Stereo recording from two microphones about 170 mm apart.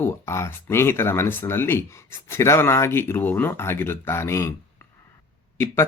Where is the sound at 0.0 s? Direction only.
15° left (ahead or behind).